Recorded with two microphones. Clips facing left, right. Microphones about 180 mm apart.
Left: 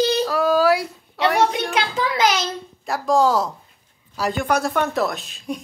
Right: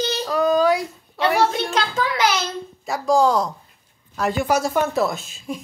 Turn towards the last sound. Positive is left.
turn(degrees=-5)  # may be behind; listen again after turning